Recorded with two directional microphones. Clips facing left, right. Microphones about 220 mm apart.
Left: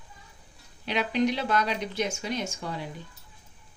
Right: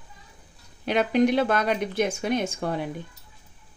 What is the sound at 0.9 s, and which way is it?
Speech, 50° right (ahead or behind).